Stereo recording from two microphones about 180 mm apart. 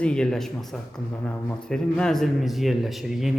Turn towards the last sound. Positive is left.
turn(degrees=0)  # may be behind; listen again after turning